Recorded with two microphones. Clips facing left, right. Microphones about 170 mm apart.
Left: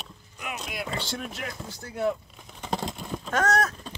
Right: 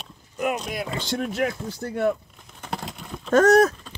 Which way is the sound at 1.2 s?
60° right (ahead or behind).